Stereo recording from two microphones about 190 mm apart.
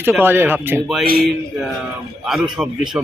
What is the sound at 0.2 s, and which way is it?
Speech, 10° right (ahead or behind).